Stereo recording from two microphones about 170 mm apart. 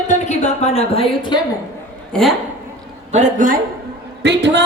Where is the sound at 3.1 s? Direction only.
45° right (ahead or behind).